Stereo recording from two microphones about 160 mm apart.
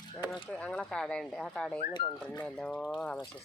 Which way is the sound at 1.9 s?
25° left (ahead or behind).